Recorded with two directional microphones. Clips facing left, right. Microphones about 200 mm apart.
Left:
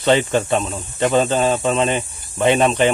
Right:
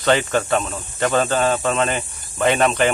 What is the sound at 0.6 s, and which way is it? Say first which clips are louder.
Speech: left 2 dB; 5° left (ahead or behind).